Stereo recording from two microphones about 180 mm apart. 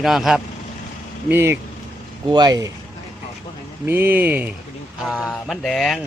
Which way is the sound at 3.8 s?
10° right (ahead or behind).